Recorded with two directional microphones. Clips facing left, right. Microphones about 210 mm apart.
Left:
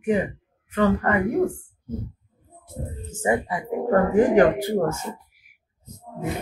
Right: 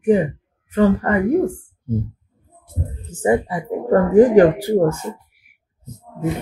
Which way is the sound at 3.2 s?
30° right (ahead or behind).